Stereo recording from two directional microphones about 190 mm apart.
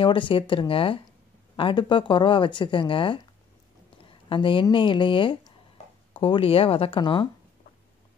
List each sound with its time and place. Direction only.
0.0 s speech: 25° left (ahead or behind)